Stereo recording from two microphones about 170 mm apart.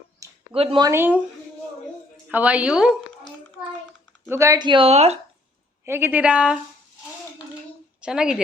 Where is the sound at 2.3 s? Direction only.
10° right (ahead or behind).